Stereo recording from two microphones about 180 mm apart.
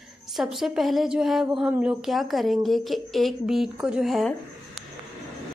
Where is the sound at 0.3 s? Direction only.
Centre (ahead or behind).